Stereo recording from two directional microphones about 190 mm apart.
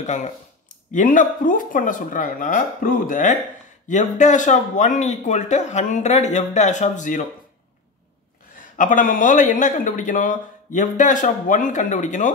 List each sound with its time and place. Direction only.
0.0 s speech: 40° left (ahead or behind)
8.7 s speech: 45° left (ahead or behind)